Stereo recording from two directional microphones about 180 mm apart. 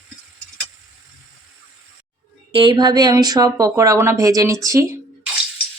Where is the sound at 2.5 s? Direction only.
25° right (ahead or behind).